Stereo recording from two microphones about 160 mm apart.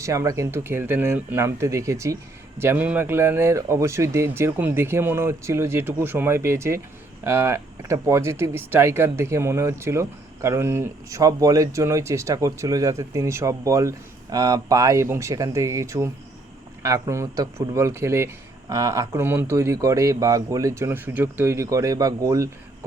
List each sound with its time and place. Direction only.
0.0 s speech: 20° right (ahead or behind)